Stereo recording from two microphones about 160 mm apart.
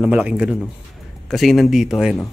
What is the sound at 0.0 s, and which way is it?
Speech, 10° right (ahead or behind).